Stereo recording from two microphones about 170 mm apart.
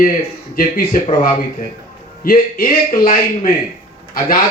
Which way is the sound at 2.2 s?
55° left (ahead or behind).